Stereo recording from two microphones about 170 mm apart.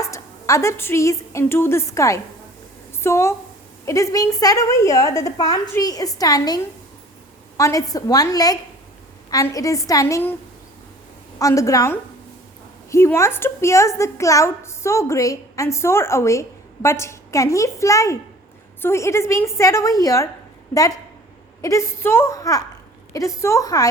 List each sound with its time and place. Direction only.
0.0 s a woman's voice: 20° left (ahead or behind)
11.3 s a woman's voice: 20° left (ahead or behind)
21.6 s a woman's voice: 15° left (ahead or behind)